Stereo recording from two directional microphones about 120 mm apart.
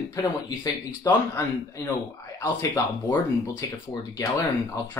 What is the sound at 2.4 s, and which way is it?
Speech, 25° left (ahead or behind).